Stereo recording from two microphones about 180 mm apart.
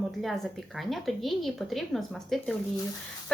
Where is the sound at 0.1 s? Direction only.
Centre (ahead or behind).